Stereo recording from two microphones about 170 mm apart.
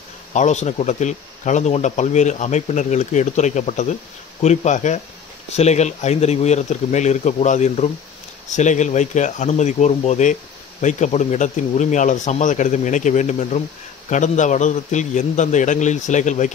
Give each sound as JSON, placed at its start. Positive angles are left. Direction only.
{"t": 0.3, "sound": "speech", "side_deg": 45}